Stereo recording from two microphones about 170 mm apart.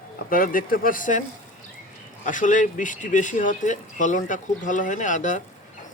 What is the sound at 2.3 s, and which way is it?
Speech, 50° left (ahead or behind).